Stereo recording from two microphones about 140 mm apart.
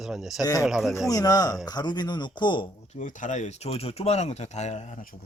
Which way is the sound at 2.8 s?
55° left (ahead or behind).